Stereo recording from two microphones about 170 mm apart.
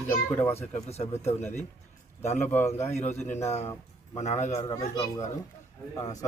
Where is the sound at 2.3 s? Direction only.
10° left (ahead or behind).